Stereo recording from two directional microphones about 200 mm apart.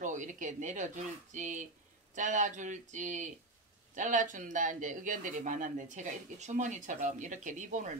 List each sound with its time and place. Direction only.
0.0 s speech: 40° right (ahead or behind)